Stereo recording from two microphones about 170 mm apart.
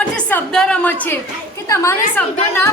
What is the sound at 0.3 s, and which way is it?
A woman's voice, 5° left (ahead or behind).